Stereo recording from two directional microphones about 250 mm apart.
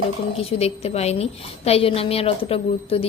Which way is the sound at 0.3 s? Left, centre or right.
Left.